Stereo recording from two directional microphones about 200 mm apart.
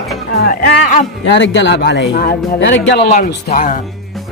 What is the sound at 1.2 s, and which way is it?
Speech, 65° left (ahead or behind).